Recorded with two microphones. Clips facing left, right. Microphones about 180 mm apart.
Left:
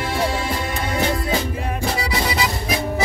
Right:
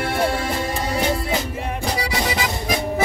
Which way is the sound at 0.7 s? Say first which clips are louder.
Even; 35° right (ahead or behind).